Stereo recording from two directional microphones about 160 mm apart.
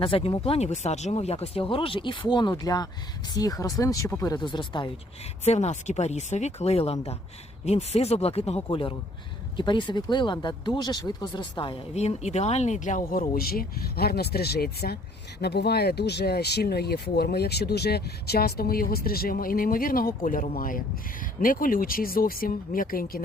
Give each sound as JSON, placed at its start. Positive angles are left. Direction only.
{"t": 0.0, "sound": "speech", "side_deg": 35}
{"t": 5.5, "sound": "speech", "side_deg": 45}
{"t": 11.9, "sound": "speech", "side_deg": 45}
{"t": 15.4, "sound": "speech", "side_deg": 90}